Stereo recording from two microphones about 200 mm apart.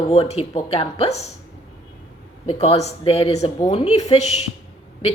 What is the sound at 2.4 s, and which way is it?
Speech, 30° left (ahead or behind).